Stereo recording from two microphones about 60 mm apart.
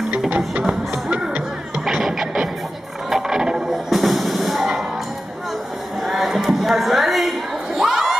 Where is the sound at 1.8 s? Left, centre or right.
Centre.